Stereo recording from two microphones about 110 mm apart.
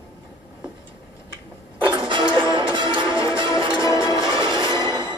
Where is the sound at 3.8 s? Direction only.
30° left (ahead or behind).